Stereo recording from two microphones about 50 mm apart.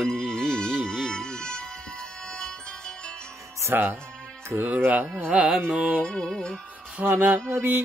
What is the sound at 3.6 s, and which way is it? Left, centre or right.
Music, right.